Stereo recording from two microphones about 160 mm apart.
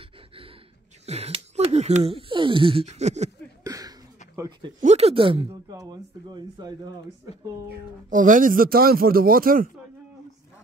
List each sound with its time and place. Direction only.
1.0 s speech: 40° right (ahead or behind)
3.6 s a sound: 20° right (ahead or behind)
4.4 s speech: 30° right (ahead or behind)
4.8 s speech: 40° right (ahead or behind)
8.1 s a man's voice: 55° right (ahead or behind)